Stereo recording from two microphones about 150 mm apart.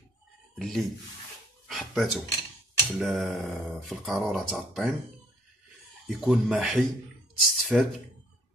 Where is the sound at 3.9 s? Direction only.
5° right (ahead or behind).